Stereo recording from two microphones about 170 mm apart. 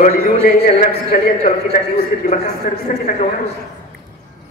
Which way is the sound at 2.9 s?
55° left (ahead or behind).